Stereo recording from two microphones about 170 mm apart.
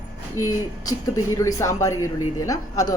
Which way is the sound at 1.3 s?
20° left (ahead or behind).